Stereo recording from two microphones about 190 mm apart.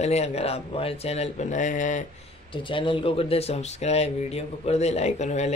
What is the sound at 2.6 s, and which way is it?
Speech, 25° left (ahead or behind).